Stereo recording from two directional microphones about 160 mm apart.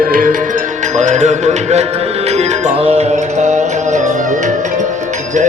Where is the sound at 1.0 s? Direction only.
45° right (ahead or behind).